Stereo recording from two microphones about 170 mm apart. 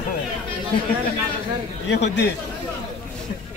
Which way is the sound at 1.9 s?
80° left.